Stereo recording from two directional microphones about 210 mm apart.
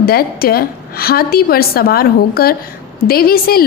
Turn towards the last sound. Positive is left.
turn(degrees=45)  # may be behind; listen again after turning